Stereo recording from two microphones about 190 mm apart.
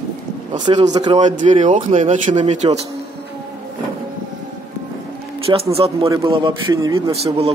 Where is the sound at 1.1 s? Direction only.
40° right (ahead or behind).